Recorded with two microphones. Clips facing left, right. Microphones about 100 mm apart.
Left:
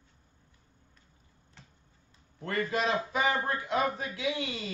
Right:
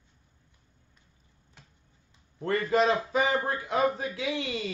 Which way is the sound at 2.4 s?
35° right (ahead or behind).